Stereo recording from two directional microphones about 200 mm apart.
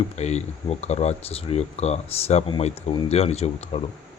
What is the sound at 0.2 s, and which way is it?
Speech, 35° left (ahead or behind).